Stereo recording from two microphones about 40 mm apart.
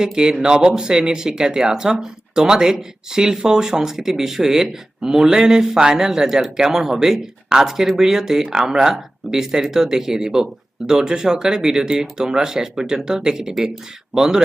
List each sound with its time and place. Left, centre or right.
0.0 s speech: centre